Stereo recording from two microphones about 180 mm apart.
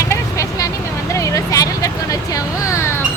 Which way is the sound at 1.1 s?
15° left (ahead or behind).